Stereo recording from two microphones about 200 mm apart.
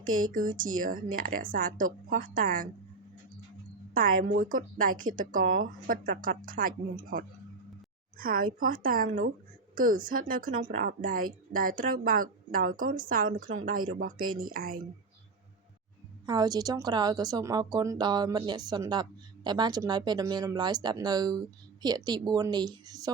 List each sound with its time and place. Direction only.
0.3 s a woman's voice: 45° right (ahead or behind)
3.9 s a woman's voice: 45° right (ahead or behind)
5.4 s speech: 90° right
5.6 s a woman's voice: 45° right (ahead or behind)
16.2 s a woman's voice: 20° right (ahead or behind)